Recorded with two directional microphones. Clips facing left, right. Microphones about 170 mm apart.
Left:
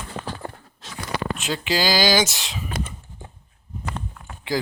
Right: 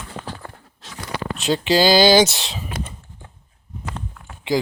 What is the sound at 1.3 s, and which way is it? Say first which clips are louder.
Speech: right 10 dB; 30° right (ahead or behind).